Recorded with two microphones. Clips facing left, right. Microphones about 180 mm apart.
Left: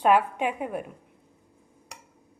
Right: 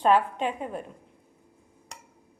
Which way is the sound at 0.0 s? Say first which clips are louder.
Left 1 dB; 10° left (ahead or behind).